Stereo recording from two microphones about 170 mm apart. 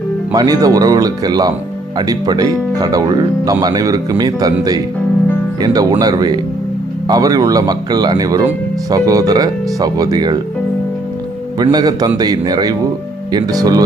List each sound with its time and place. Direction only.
0.3 s speech: 20° right (ahead or behind)
5.6 s speech: 25° right (ahead or behind)
11.6 s speech: 25° right (ahead or behind)